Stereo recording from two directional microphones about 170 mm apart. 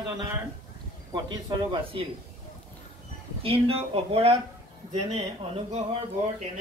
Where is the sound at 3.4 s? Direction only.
35° right (ahead or behind).